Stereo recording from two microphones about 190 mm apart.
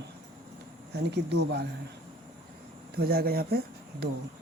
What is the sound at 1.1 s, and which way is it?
Speech, 60° right (ahead or behind).